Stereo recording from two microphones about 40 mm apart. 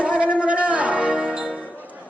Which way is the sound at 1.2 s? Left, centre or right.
Centre.